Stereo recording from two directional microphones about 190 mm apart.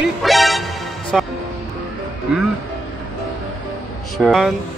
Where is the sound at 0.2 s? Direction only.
Centre (ahead or behind).